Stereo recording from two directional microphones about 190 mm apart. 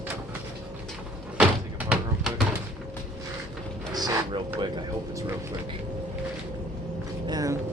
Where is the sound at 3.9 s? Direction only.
20° right (ahead or behind).